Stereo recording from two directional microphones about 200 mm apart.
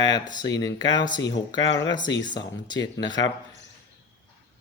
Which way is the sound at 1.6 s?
65° left (ahead or behind).